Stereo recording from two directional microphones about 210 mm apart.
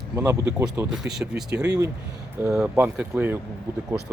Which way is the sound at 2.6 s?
5° right (ahead or behind).